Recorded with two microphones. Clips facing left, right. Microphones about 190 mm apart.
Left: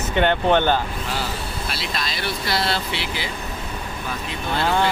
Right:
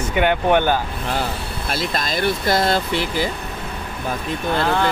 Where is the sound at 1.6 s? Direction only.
50° right (ahead or behind).